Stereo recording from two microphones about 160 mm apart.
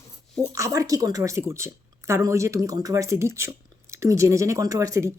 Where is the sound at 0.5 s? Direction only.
20° right (ahead or behind).